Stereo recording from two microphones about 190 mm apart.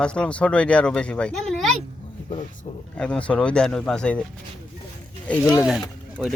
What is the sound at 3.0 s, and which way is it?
Speech, 5° left (ahead or behind).